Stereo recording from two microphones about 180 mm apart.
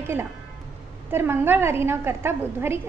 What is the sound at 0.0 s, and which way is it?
A woman's voice, 15° right (ahead or behind).